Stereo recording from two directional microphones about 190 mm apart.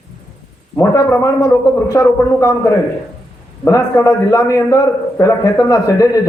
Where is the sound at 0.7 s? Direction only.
15° left (ahead or behind).